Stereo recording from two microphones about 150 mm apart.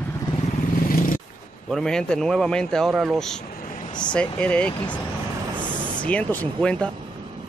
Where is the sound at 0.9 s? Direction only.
65° left (ahead or behind).